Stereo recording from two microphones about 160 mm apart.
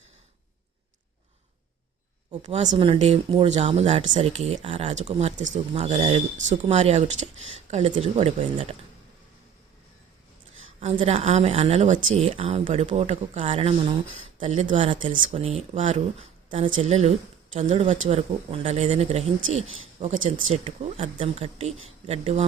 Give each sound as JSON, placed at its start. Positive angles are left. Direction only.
{"t": 2.4, "sound": "speech", "side_deg": -45}
{"t": 2.6, "sound": "speech", "side_deg": -35}
{"t": 10.8, "sound": "speech", "side_deg": -40}
{"t": 12.6, "sound": "speech", "side_deg": -45}
{"t": 14.4, "sound": "speech", "side_deg": -45}